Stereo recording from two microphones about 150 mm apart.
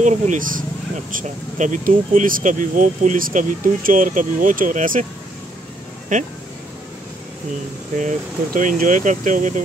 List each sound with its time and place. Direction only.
0.0 s speech: 55° right (ahead or behind)
6.1 s speech: 60° right (ahead or behind)
8.0 s speech: 55° right (ahead or behind)